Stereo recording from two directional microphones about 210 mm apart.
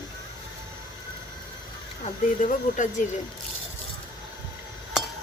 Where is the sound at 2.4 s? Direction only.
35° left (ahead or behind).